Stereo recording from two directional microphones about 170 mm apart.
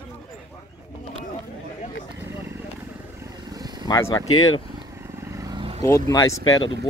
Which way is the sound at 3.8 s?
25° left (ahead or behind).